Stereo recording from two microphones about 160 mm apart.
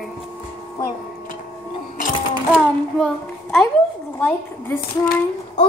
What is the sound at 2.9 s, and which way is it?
A child's voice, 5° left (ahead or behind).